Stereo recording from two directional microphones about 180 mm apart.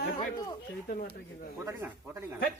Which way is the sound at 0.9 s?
50° left (ahead or behind).